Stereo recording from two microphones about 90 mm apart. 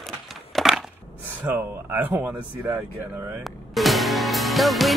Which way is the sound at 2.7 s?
30° right (ahead or behind).